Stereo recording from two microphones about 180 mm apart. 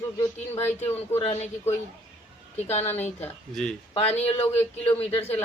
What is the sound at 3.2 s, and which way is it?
Speech, 5° left (ahead or behind).